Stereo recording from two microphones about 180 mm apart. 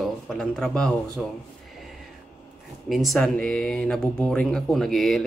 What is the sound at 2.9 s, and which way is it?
Speech, centre (ahead or behind).